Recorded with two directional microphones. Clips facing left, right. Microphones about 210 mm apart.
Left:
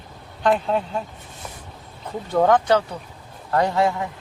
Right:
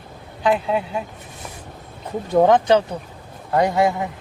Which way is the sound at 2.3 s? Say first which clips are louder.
Right 3 dB; 20° right (ahead or behind).